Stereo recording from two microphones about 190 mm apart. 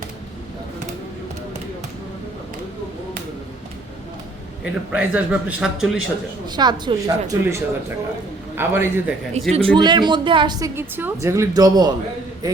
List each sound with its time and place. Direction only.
4.9 s a man's voice: 5° right (ahead or behind)
6.6 s a woman's voice: 20° right (ahead or behind)
9.5 s a woman's voice: 30° right (ahead or behind)